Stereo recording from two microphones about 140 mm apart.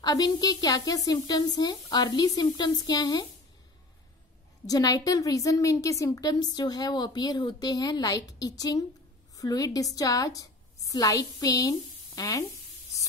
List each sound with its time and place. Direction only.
0.0 s a woman's voice: 25° left (ahead or behind)
4.6 s a woman's voice: 25° left (ahead or behind)